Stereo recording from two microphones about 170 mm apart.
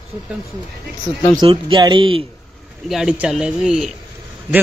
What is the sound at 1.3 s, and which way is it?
Speech, 30° right (ahead or behind).